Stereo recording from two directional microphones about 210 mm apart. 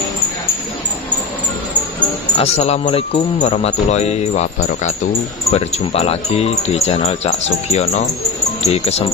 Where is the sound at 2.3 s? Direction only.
30° left (ahead or behind).